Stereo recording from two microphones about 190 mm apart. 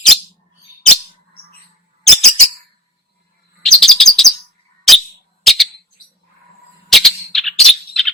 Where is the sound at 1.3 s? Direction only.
55° left (ahead or behind).